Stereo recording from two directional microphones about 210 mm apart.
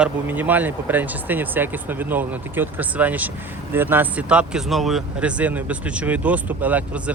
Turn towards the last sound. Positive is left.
turn(degrees=-5)  # may be behind; listen again after turning